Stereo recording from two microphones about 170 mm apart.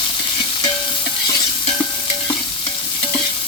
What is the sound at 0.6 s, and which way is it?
Stir, 25° left (ahead or behind).